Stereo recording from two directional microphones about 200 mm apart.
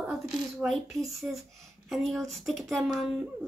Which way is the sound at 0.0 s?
Centre (ahead or behind).